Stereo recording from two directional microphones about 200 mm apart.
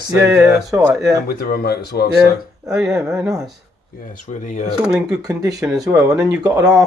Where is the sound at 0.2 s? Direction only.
15° right (ahead or behind).